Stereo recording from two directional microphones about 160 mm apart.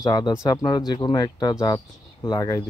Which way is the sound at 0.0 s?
25° left (ahead or behind).